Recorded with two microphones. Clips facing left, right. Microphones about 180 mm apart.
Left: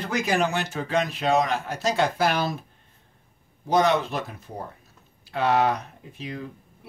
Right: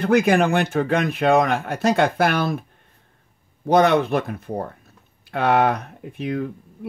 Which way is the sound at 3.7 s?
60° right (ahead or behind).